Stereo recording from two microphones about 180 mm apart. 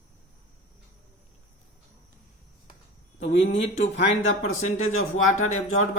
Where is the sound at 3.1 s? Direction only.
35° left (ahead or behind).